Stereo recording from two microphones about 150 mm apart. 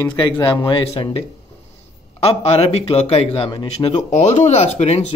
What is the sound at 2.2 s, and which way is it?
Speech, 40° left (ahead or behind).